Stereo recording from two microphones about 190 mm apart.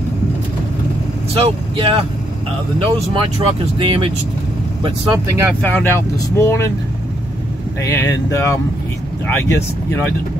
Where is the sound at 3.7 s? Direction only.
25° right (ahead or behind).